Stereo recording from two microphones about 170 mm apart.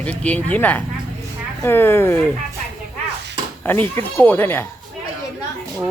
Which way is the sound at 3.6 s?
10° left (ahead or behind).